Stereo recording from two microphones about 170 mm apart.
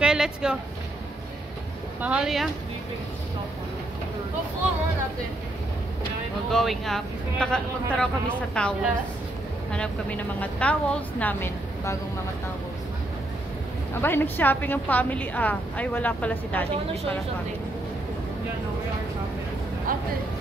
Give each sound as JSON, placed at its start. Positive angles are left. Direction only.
{"t": 0.0, "sound": "a sound", "side_deg": -5}
{"t": 2.0, "sound": "speech", "side_deg": -5}
{"t": 6.5, "sound": "a woman's voice", "side_deg": 0}
{"t": 14.0, "sound": "a woman's voice", "side_deg": 10}
{"t": 19.9, "sound": "speech", "side_deg": -55}